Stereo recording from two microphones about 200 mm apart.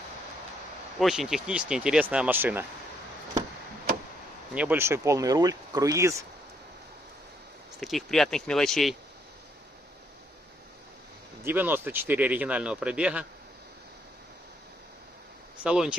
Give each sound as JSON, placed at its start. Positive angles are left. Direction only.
{"t": 0.9, "sound": "speech", "side_deg": 0}
{"t": 4.6, "sound": "speech", "side_deg": -10}
{"t": 7.8, "sound": "speech", "side_deg": 0}
{"t": 11.4, "sound": "speech", "side_deg": -10}
{"t": 15.6, "sound": "speech", "side_deg": -5}